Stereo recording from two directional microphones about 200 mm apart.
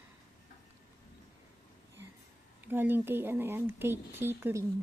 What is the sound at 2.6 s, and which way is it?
Speech, 10° right (ahead or behind).